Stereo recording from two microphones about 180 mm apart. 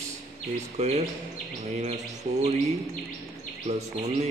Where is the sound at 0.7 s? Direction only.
40° right (ahead or behind).